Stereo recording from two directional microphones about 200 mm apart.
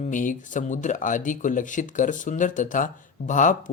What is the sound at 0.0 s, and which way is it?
Speech, 40° left (ahead or behind).